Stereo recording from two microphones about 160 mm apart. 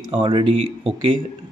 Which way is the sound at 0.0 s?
30° right (ahead or behind).